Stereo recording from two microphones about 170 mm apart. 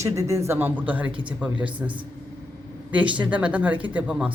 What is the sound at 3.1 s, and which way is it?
Speech, 10° right (ahead or behind).